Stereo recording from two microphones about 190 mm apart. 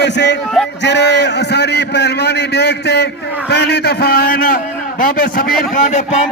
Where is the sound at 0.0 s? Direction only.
65° left (ahead or behind); by 6.1 s 40° left (ahead or behind).